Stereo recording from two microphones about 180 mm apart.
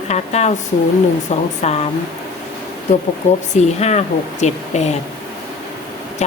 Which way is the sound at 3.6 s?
40° left (ahead or behind).